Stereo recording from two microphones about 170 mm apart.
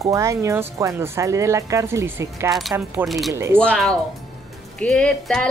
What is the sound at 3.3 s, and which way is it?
Speech, 15° right (ahead or behind).